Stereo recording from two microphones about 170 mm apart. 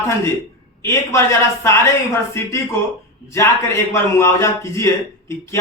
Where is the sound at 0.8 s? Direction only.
15° left (ahead or behind).